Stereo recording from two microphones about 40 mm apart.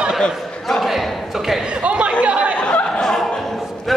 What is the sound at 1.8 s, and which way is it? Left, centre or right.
Chatter, right.